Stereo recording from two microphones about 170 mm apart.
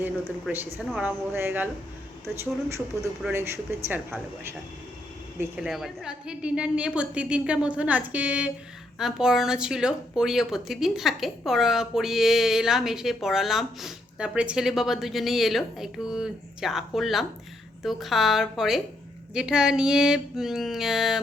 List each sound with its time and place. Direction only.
0.0 s a woman's voice: 10° right (ahead or behind)
5.4 s a woman's voice: 5° right (ahead or behind)